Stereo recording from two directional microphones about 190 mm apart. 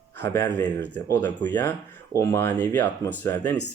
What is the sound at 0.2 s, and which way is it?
Speech, 10° left (ahead or behind).